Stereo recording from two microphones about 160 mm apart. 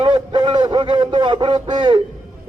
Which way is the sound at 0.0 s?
30° right (ahead or behind).